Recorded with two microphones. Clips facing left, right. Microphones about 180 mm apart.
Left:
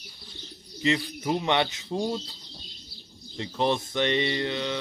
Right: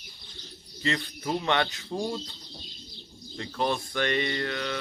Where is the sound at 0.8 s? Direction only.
20° left (ahead or behind).